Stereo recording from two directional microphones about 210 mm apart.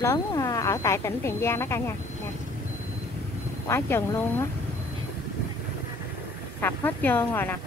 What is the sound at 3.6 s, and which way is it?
Speech, 15° left (ahead or behind).